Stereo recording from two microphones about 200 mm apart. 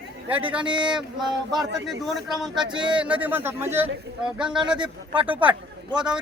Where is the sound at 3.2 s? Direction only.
10° right (ahead or behind).